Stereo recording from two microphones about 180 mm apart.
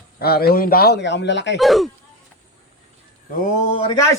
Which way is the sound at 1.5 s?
Centre (ahead or behind).